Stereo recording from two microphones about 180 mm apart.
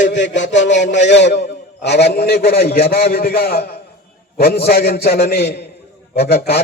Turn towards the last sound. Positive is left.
turn(degrees=60)  # may be behind; listen again after turning